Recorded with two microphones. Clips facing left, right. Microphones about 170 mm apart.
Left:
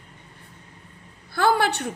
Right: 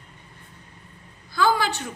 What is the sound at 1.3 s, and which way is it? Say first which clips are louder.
Speech: left 1 dB; 65° left (ahead or behind).